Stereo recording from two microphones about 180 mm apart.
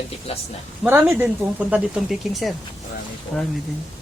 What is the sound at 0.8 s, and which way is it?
Speech, 10° right (ahead or behind).